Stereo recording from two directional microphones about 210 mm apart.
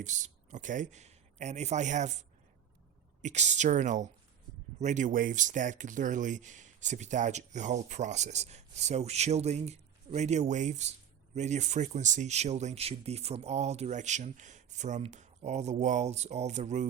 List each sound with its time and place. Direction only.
0.0 s speech: 35° right (ahead or behind)